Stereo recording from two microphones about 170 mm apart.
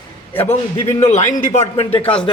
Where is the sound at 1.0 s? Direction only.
45° left (ahead or behind).